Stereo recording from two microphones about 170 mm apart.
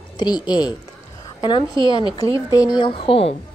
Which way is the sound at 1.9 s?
20° left (ahead or behind).